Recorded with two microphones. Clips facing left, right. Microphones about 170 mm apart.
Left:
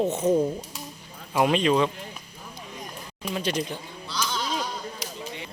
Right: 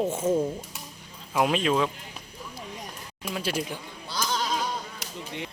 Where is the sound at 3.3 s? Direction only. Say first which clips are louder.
Left 2 dB; 5° right (ahead or behind).